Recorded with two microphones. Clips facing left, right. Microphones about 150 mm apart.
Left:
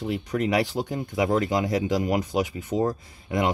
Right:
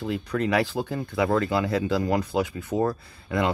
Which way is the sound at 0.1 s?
20° left (ahead or behind).